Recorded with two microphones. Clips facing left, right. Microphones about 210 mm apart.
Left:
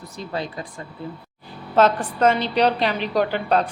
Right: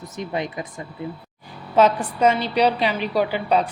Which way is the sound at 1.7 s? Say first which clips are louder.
Right 1 dB; 10° right (ahead or behind).